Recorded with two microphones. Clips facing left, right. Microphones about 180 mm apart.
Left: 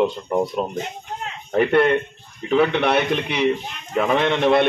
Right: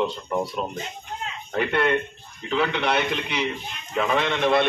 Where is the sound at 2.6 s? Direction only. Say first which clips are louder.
Left 5 dB; 55° left (ahead or behind).